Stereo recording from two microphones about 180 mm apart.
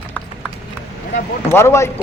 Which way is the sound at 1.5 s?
15° left (ahead or behind).